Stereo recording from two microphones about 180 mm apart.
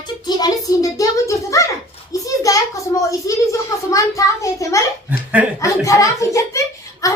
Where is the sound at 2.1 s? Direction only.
20° left (ahead or behind).